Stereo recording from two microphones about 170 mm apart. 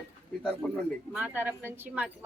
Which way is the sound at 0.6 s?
10° left (ahead or behind).